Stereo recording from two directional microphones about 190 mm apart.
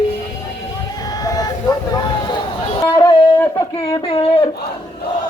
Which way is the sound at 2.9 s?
20° left (ahead or behind).